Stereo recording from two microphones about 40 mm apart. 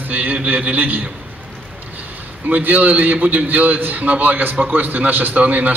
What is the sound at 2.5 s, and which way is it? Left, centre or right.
A man's voice, right.